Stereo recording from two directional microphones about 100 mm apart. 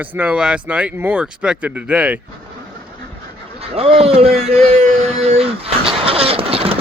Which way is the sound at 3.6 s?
85° right.